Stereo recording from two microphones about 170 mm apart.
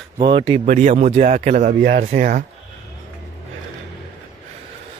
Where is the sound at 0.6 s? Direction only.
50° right (ahead or behind).